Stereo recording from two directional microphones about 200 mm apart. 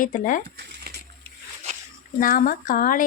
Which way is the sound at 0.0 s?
40° left (ahead or behind).